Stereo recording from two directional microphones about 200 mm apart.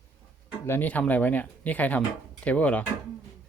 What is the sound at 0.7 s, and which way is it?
Speech, 10° left (ahead or behind).